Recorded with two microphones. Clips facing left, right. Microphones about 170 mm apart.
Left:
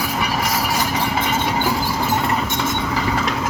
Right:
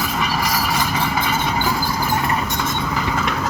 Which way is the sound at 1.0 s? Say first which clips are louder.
Left 1 dB; 25° left (ahead or behind).